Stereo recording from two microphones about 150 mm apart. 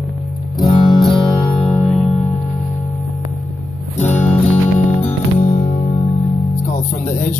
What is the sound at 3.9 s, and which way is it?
Music, 50° left (ahead or behind).